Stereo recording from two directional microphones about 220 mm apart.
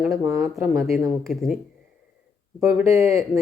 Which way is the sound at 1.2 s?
Centre (ahead or behind).